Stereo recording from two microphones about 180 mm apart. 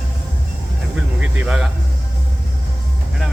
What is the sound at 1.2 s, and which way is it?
Speech, 5° right (ahead or behind).